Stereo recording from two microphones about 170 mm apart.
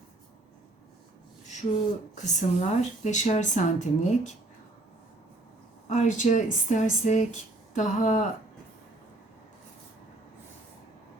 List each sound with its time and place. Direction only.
2.1 s speech: 45° left (ahead or behind)
5.9 s speech: 45° left (ahead or behind)